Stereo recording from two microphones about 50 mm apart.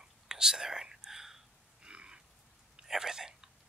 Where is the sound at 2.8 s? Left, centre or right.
Centre.